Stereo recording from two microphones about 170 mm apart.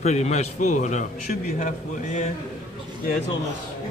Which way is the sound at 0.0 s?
40° left (ahead or behind).